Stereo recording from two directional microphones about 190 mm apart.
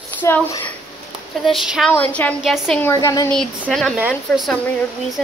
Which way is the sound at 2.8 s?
15° left (ahead or behind).